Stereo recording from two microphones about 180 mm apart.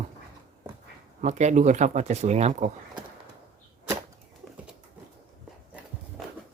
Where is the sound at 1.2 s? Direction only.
40° right (ahead or behind).